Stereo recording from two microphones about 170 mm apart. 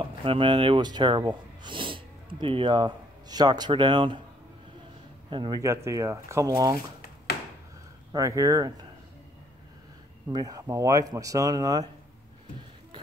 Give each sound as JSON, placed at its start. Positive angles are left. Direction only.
{"t": 0.0, "sound": "speech", "side_deg": -30}
{"t": 5.3, "sound": "speech", "side_deg": -25}
{"t": 8.1, "sound": "speech", "side_deg": -20}
{"t": 10.3, "sound": "speech", "side_deg": -20}